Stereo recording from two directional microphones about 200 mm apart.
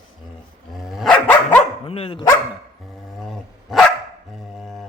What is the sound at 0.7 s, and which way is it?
Dog, centre (ahead or behind).